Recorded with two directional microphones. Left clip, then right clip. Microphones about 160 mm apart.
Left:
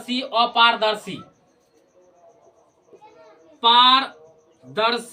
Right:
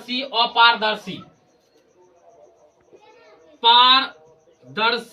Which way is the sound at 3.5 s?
15° left (ahead or behind).